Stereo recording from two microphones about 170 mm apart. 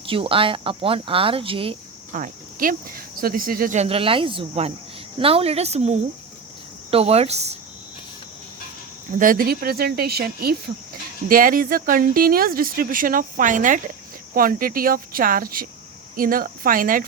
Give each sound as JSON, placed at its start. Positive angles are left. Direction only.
{"t": 0.0, "sound": "speech", "side_deg": -30}
{"t": 2.1, "sound": "speech", "side_deg": -50}
{"t": 9.1, "sound": "speech", "side_deg": -55}
{"t": 11.3, "sound": "speech", "side_deg": -55}